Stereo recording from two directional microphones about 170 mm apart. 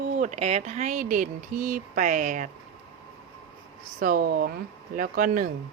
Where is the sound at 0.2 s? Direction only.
40° right (ahead or behind).